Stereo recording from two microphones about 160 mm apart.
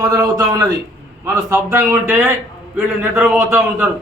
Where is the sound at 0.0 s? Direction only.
25° right (ahead or behind).